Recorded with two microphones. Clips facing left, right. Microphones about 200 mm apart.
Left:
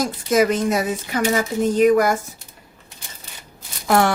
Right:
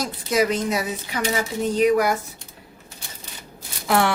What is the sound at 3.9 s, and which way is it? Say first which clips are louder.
Speech: left 3 dB; 45° left (ahead or behind).